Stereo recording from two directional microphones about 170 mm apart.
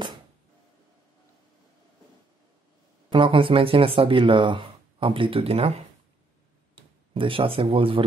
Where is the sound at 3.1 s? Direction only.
30° right (ahead or behind).